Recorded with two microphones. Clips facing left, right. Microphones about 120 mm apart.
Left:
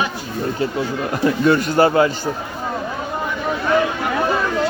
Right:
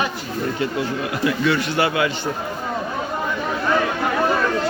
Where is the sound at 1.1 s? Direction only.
45° left (ahead or behind).